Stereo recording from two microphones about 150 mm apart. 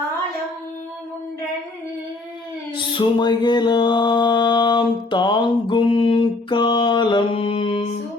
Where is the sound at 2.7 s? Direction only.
30° left (ahead or behind).